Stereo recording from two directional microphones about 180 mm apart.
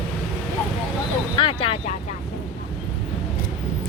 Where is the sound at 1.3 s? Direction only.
30° left (ahead or behind).